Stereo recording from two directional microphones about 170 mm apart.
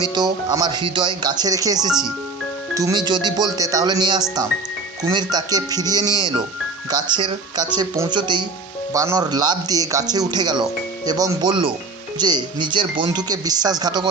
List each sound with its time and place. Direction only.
0.0 s speech: 25° right (ahead or behind)